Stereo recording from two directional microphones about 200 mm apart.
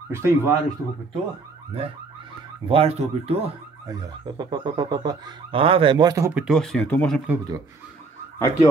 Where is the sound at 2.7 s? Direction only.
30° right (ahead or behind).